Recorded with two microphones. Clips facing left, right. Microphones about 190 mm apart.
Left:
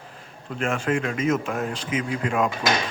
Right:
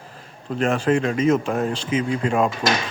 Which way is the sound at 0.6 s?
35° right (ahead or behind).